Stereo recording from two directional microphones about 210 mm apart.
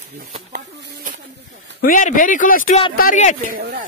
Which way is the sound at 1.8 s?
40° left (ahead or behind).